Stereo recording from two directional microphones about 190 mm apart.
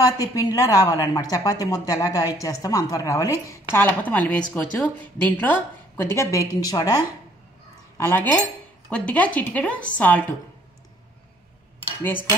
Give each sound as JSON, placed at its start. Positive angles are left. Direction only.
{"t": 0.0, "sound": "a woman's voice", "side_deg": 20}
{"t": 8.1, "sound": "speech", "side_deg": 10}
{"t": 12.0, "sound": "speech", "side_deg": 10}